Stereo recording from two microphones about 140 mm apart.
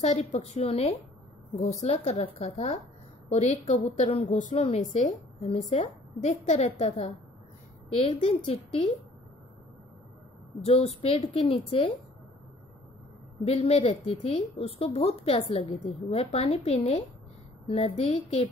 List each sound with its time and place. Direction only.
0.0 s speech: 50° left (ahead or behind)
4.4 s a woman's voice: 60° left (ahead or behind)
4.6 s speech: 50° left (ahead or behind); by 8.9 s 35° left (ahead or behind)
10.6 s speech: 50° left (ahead or behind)
13.5 s speech: 45° left (ahead or behind)